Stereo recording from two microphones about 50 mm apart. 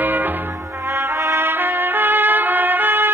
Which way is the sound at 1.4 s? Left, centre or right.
Right.